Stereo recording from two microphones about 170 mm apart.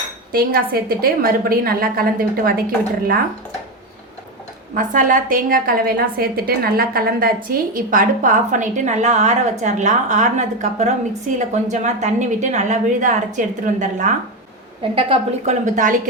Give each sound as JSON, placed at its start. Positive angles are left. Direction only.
{"t": 0.3, "sound": "a woman's voice", "side_deg": -60}
{"t": 4.8, "sound": "a woman's voice", "side_deg": -55}
{"t": 14.9, "sound": "a woman's voice", "side_deg": -35}